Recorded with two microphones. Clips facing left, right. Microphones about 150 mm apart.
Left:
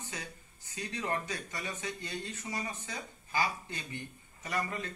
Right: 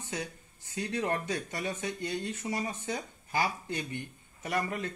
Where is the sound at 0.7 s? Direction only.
70° right (ahead or behind).